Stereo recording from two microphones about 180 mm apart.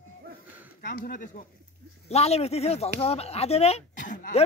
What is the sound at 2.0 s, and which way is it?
Speech, 35° left (ahead or behind).